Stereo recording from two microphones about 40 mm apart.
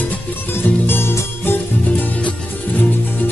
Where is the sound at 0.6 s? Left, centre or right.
Left.